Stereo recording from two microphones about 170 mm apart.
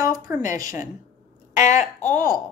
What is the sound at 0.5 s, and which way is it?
Speech, 20° right (ahead or behind).